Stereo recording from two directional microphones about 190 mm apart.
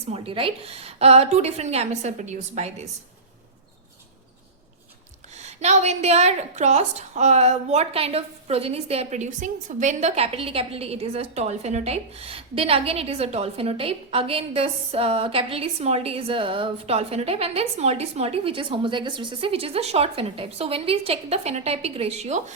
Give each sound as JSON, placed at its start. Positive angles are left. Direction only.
{"t": 0.1, "sound": "a woman's voice", "side_deg": -30}
{"t": 5.3, "sound": "a woman's voice", "side_deg": -35}